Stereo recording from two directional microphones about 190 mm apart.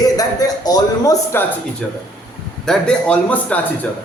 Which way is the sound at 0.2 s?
20° left (ahead or behind).